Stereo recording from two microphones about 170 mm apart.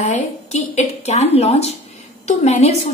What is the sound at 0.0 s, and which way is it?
A woman's voice, 40° left (ahead or behind).